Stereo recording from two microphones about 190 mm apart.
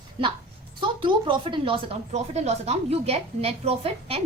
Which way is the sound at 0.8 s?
25° right (ahead or behind).